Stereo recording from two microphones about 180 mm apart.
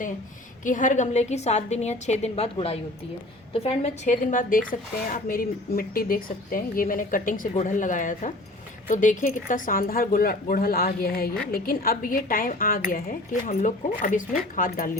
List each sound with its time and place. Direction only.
0.6 s a woman's voice: 45° left (ahead or behind)